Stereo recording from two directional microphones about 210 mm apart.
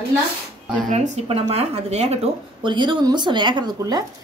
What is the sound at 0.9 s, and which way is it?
Speech, 35° right (ahead or behind).